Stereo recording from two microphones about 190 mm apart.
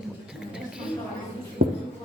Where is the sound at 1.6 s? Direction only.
45° right (ahead or behind).